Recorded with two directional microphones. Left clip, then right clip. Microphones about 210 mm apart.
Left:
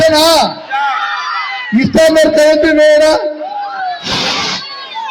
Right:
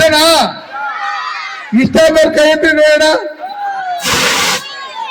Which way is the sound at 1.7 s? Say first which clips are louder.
Even; 20° left (ahead or behind).